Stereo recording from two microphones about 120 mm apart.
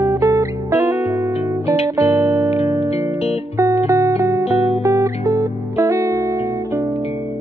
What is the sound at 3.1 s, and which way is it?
Music, 60° left (ahead or behind).